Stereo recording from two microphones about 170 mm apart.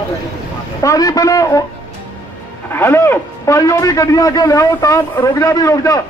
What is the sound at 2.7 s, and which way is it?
A man's voice, 15° left (ahead or behind).